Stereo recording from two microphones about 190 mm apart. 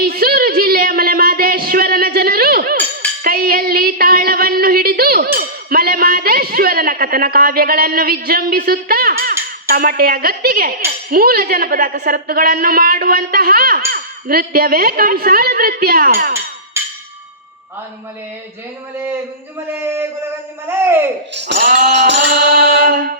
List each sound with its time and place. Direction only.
0.0 s a sound: 55° right (ahead or behind)
3.2 s female singing: 50° right (ahead or behind)
19.8 s speech: 10° right (ahead or behind)
21.3 s speech: 65° right (ahead or behind)
21.6 s a sound: 50° right (ahead or behind)
22.3 s mantra: 55° right (ahead or behind)